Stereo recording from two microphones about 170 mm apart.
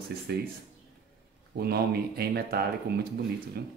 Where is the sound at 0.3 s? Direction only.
65° right (ahead or behind).